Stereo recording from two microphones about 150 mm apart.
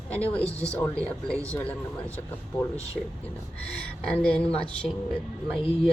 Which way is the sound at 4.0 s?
5° left (ahead or behind).